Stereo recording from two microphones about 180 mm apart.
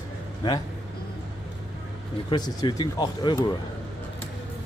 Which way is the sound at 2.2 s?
25° left (ahead or behind).